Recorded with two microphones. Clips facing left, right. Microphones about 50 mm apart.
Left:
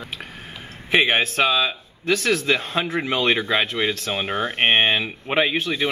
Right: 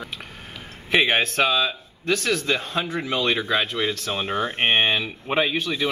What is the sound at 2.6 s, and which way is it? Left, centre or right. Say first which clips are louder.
Speech: left 3 dB; left.